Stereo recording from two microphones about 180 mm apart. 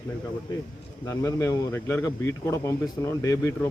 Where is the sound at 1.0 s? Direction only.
15° left (ahead or behind).